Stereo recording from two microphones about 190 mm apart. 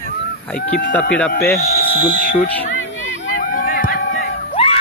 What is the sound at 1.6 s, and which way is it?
Fire alarm, 55° left (ahead or behind).